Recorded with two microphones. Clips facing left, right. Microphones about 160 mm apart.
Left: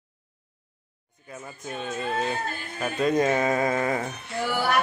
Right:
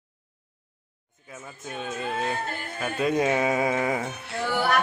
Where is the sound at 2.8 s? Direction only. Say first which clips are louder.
Left 1 dB; 5° right (ahead or behind).